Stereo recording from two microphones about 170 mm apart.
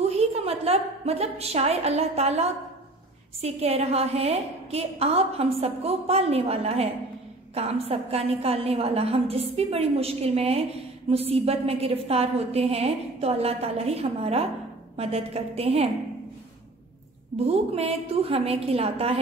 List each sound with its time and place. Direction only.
0.0 s a woman's voice: 40° right (ahead or behind)
17.4 s a woman's voice: 35° right (ahead or behind)